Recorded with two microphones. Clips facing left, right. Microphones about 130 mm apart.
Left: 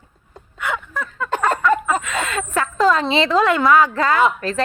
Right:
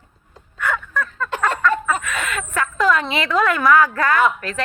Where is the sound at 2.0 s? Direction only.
25° left (ahead or behind).